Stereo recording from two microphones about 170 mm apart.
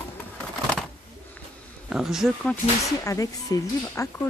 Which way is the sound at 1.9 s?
5° right (ahead or behind).